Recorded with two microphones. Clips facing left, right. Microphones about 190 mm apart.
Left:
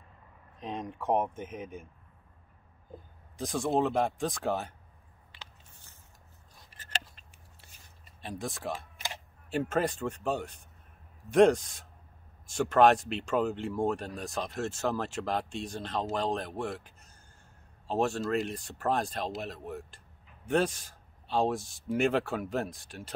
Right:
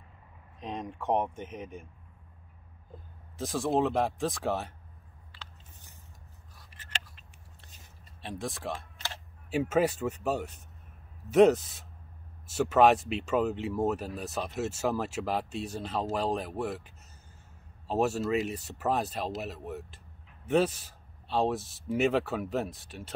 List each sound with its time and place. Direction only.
0.6 s speech: centre (ahead or behind)
3.3 s speech: centre (ahead or behind)
6.7 s a sound: 40° left (ahead or behind)
8.2 s speech: centre (ahead or behind)